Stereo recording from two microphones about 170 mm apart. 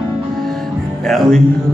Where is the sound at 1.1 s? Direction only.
Centre (ahead or behind).